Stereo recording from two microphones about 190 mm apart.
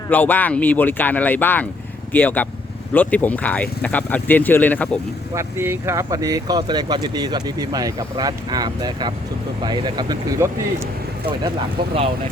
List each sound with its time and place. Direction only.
0.1 s speech: 10° left (ahead or behind)
5.3 s speech: 15° right (ahead or behind)